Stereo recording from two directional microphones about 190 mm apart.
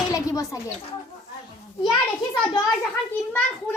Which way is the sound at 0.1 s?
20° left (ahead or behind).